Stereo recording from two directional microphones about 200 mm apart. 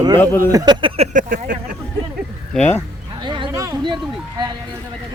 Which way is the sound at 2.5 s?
5° left (ahead or behind).